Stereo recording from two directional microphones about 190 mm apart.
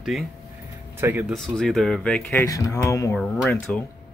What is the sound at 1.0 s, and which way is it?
Speech, 10° right (ahead or behind).